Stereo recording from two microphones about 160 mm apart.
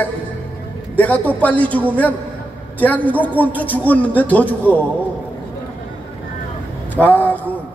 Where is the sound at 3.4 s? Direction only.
10° left (ahead or behind).